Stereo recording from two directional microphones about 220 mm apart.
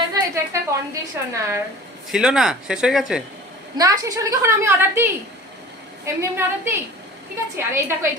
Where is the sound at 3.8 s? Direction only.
15° right (ahead or behind).